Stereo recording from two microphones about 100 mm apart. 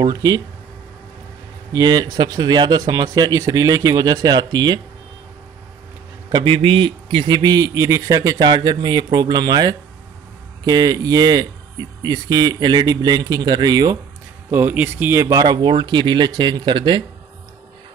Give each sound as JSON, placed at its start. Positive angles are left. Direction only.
{"t": 0.0, "sound": "speech", "side_deg": -40}
{"t": 1.7, "sound": "speech", "side_deg": -45}
{"t": 6.3, "sound": "speech", "side_deg": -60}
{"t": 7.2, "sound": "speech", "side_deg": -45}
{"t": 8.5, "sound": "speech", "side_deg": -45}
{"t": 14.5, "sound": "speech", "side_deg": -20}